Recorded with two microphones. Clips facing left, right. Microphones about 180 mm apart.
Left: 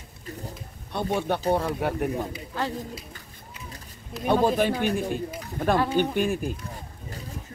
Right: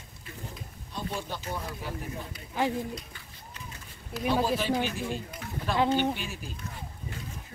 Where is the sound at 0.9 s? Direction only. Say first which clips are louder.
Left 9 dB; 65° left (ahead or behind).